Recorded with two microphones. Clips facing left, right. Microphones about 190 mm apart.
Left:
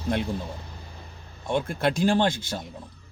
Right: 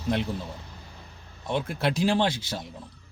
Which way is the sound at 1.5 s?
5° right (ahead or behind).